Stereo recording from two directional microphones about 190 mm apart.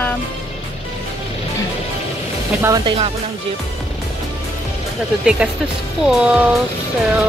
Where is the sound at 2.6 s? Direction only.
15° right (ahead or behind).